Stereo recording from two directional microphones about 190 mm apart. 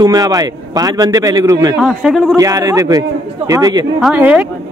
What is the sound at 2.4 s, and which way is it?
A man's voice, 15° right (ahead or behind).